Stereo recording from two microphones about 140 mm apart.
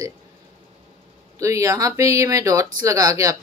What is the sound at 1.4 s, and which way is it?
Speech, 20° right (ahead or behind).